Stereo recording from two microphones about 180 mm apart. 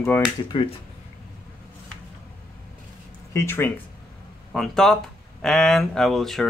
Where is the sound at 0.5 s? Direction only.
25° left (ahead or behind).